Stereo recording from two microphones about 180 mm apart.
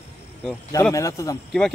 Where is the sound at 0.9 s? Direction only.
15° left (ahead or behind).